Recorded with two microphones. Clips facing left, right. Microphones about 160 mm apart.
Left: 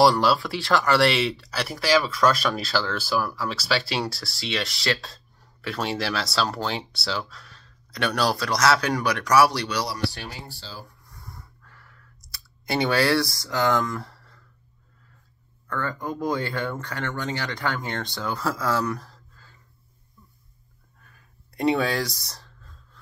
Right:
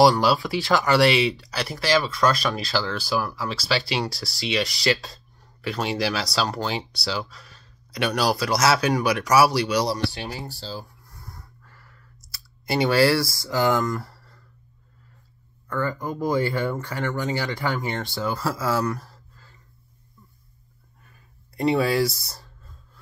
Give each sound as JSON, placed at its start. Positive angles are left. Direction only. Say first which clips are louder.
{"t": 0.0, "sound": "speech", "louder": "right 1 dB", "side_deg": 0}
{"t": 9.8, "sound": "speech", "louder": "right 4 dB", "side_deg": -25}
{"t": 10.4, "sound": "speech", "louder": "right 6 dB", "side_deg": -40}
{"t": 11.1, "sound": "clicking", "louder": "even", "side_deg": 0}
{"t": 15.7, "sound": "speech", "louder": "right 2 dB", "side_deg": -5}
{"t": 21.5, "sound": "speech", "louder": "right 2 dB", "side_deg": 0}